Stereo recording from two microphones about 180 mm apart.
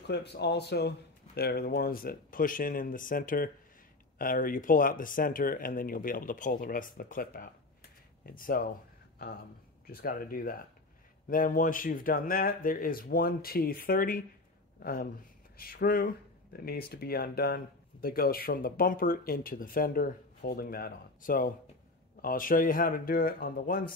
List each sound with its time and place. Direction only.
0.0 s speech: 65° left (ahead or behind)